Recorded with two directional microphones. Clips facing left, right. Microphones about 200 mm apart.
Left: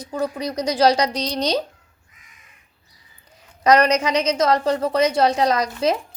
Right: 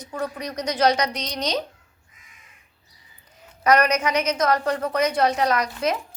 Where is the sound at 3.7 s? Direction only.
30° left (ahead or behind).